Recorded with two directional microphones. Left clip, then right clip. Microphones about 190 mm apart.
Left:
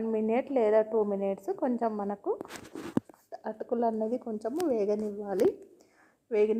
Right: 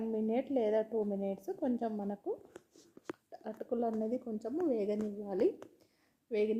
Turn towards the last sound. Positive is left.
turn(degrees=5)  # may be behind; listen again after turning